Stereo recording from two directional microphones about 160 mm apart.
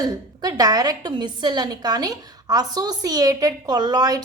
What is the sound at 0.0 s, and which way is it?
A woman's voice, 25° right (ahead or behind).